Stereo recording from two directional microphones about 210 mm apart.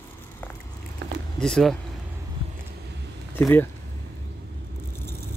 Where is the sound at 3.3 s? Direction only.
10° left (ahead or behind).